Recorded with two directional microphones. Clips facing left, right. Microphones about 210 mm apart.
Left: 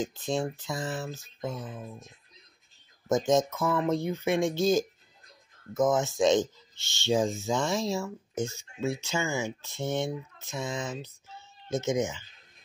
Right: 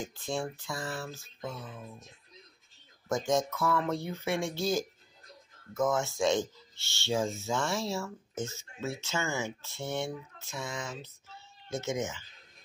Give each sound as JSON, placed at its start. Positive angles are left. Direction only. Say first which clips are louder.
{"t": 0.0, "sound": "speech", "louder": "left 5 dB", "side_deg": 20}
{"t": 3.3, "sound": "speech", "louder": "left 2 dB", "side_deg": 20}